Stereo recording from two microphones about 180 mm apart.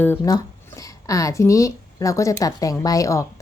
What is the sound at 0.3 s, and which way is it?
Speech, 20° left (ahead or behind).